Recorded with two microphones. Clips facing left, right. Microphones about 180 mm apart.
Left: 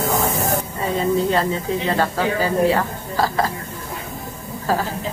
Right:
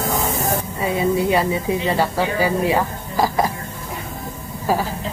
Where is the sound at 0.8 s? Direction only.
10° right (ahead or behind).